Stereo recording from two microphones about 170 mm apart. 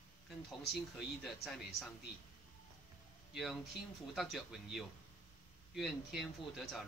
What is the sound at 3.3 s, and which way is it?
A man's voice, centre (ahead or behind).